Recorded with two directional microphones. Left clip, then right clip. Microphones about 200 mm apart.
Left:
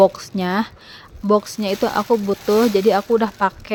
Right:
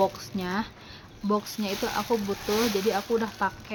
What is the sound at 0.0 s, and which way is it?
Speech, 40° left (ahead or behind).